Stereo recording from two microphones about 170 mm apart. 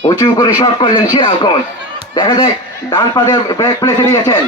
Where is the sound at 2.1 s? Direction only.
25° left (ahead or behind).